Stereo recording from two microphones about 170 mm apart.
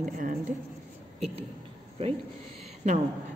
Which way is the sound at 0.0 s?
50° right (ahead or behind).